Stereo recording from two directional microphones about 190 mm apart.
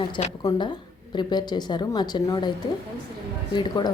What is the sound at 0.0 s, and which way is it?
A woman's voice, 25° left (ahead or behind).